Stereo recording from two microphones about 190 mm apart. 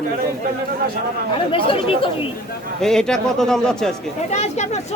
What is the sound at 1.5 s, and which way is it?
Speech, 30° left (ahead or behind).